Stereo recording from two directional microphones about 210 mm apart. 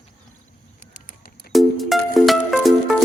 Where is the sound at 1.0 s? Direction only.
40° left (ahead or behind).